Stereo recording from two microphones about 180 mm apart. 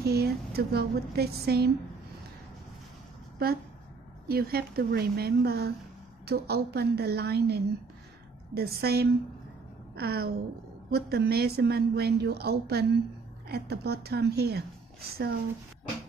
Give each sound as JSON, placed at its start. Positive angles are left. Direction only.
{"t": 0.0, "sound": "a woman's voice", "side_deg": -60}
{"t": 4.3, "sound": "a woman's voice", "side_deg": -55}